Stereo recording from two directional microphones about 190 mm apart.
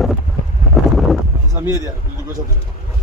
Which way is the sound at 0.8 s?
Centre (ahead or behind).